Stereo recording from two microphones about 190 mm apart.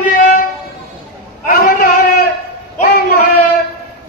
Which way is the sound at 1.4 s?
50° left (ahead or behind).